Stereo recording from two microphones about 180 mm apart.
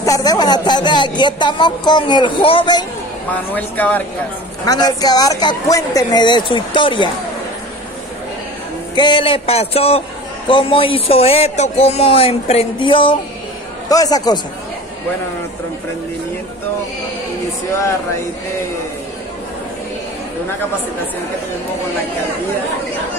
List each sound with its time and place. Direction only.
0.0 s speech: 20° left (ahead or behind)
3.5 s speech: 10° left (ahead or behind)
4.6 s speech: 20° left (ahead or behind)
8.9 s speech: 25° left (ahead or behind)